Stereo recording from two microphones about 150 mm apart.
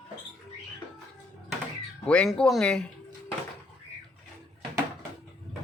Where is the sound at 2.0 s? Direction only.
5° left (ahead or behind).